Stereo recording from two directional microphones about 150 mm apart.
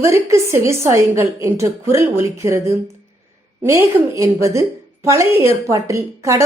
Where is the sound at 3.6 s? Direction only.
20° right (ahead or behind).